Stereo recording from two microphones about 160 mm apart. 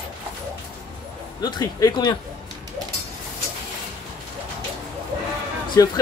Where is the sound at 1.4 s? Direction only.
25° left (ahead or behind).